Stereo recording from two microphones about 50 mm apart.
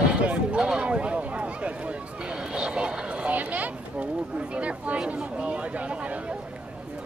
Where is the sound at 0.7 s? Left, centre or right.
Right.